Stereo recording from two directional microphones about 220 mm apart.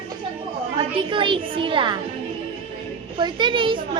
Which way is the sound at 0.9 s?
20° right (ahead or behind).